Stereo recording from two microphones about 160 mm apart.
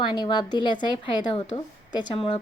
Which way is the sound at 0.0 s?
30° left (ahead or behind).